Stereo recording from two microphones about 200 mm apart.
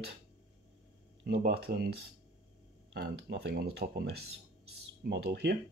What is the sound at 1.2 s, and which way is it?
Speech, 55° right (ahead or behind).